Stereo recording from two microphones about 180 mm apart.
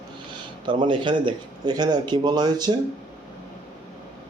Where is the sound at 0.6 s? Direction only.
25° right (ahead or behind).